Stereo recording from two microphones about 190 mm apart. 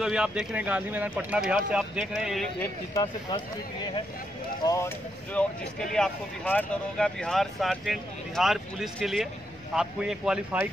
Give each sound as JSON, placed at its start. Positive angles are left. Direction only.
{"t": 0.0, "sound": "speech", "side_deg": -5}
{"t": 2.9, "sound": "speech", "side_deg": 20}